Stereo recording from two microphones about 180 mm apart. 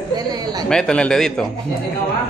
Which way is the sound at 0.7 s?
5° left (ahead or behind).